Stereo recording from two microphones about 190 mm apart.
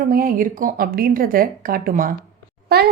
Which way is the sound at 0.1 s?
50° right (ahead or behind).